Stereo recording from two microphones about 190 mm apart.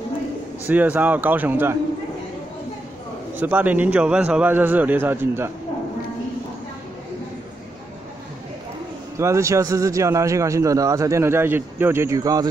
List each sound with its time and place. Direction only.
0.7 s a man's voice: 10° right (ahead or behind)
3.3 s a man's voice: 10° right (ahead or behind)
9.2 s a man's voice: 15° right (ahead or behind)